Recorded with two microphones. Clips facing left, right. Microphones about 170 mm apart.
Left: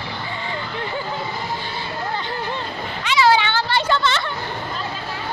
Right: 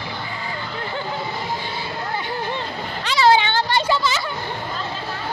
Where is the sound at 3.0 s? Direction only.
30° right (ahead or behind).